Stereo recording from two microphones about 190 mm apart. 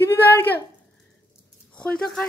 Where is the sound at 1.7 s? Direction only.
5° left (ahead or behind).